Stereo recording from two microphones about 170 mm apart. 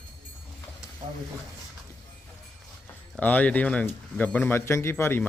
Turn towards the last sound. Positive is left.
turn(degrees=15)  # may be behind; listen again after turning